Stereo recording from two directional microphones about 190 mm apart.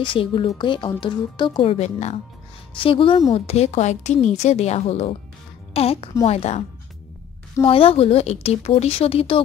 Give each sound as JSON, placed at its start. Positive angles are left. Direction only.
{"t": 0.1, "sound": "a woman's voice", "side_deg": 25}
{"t": 7.6, "sound": "a woman's voice", "side_deg": 30}